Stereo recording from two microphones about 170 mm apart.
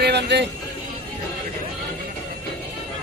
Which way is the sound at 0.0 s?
80° right.